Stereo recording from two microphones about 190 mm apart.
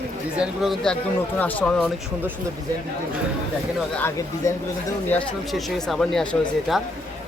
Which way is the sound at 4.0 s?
15° left (ahead or behind).